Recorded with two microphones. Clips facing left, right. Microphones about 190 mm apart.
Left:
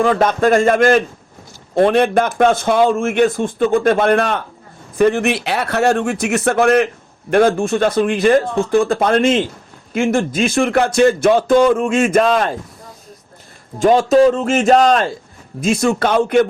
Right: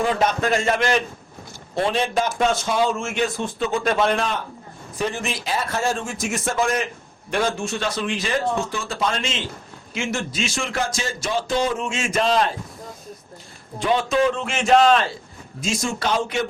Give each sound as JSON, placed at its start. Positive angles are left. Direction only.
{"t": 0.0, "sound": "a man's voice", "side_deg": 55}
{"t": 13.7, "sound": "speech", "side_deg": 45}
{"t": 15.6, "sound": "a man's voice", "side_deg": 60}